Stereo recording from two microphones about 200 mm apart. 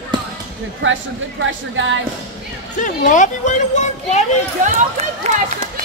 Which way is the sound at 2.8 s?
40° left (ahead or behind).